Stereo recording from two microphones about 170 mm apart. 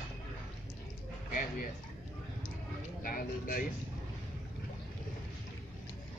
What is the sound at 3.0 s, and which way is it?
Speech, 55° left (ahead or behind).